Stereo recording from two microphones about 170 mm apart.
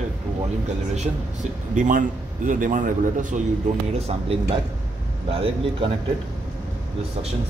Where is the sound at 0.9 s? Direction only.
45° right (ahead or behind).